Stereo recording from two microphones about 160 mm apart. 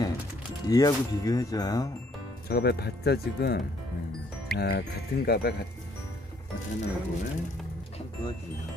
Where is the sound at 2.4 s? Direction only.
90° left.